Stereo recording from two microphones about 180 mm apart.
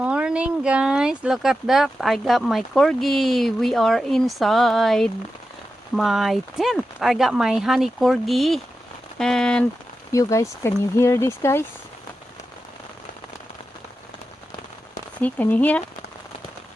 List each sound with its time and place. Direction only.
0.0 s speech: 5° right (ahead or behind)
10.1 s speech: 15° left (ahead or behind)
15.2 s speech: 10° left (ahead or behind)